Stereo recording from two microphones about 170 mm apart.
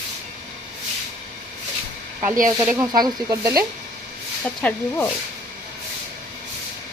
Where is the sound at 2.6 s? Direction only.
15° right (ahead or behind).